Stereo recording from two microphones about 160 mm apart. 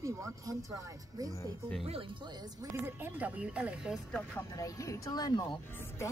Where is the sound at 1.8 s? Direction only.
35° right (ahead or behind).